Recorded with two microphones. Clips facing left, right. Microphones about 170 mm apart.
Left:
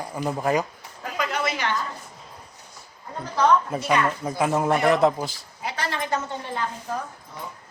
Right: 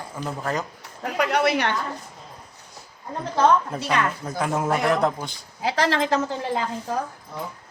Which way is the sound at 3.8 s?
5° left (ahead or behind).